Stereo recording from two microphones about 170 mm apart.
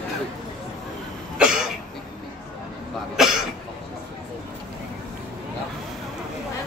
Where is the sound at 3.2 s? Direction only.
5° right (ahead or behind).